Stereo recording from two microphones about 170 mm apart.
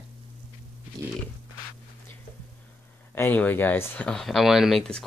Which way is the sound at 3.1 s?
10° left (ahead or behind).